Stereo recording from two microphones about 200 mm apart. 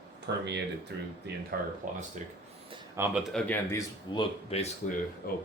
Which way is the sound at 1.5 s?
50° right (ahead or behind).